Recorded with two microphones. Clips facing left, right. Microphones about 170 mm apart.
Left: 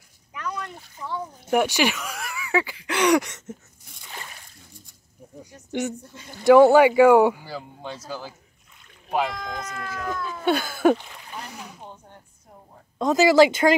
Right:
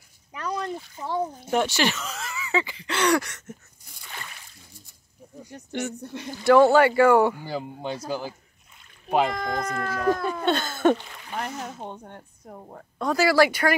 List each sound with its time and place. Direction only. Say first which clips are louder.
0.3 s a sound: right 3 dB; 35° right (ahead or behind)
1.5 s speech: left 3 dB; 10° left (ahead or behind)
5.7 s speech: left 3 dB; 15° left (ahead or behind)
5.9 s speech: right 8 dB; 70° right (ahead or behind)
6.4 s speech: left 3 dB; 15° left (ahead or behind)
7.4 s a man's voice: right 4 dB; 15° right (ahead or behind)
9.3 s speech: right 5 dB; 60° right (ahead or behind)
10.4 s speech: left 3 dB; 10° left (ahead or behind)
11.3 s speech: right 7 dB; 70° right (ahead or behind)
13.0 s speech: left 4 dB; 20° left (ahead or behind)